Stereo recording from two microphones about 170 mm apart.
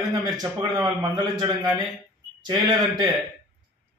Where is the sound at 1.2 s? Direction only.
25° right (ahead or behind).